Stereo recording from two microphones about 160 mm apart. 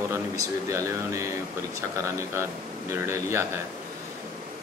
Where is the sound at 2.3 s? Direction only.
15° right (ahead or behind).